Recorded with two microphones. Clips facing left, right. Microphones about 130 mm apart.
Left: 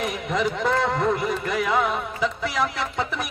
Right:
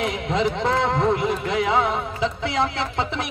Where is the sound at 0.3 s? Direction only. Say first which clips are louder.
Right 1 dB; 25° right (ahead or behind).